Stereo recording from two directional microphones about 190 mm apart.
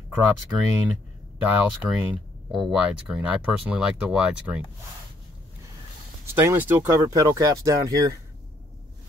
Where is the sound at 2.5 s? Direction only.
Centre (ahead or behind).